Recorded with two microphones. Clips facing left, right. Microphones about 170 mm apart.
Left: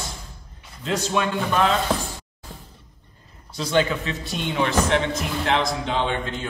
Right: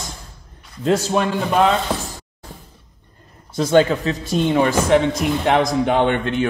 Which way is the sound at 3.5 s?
45° right (ahead or behind).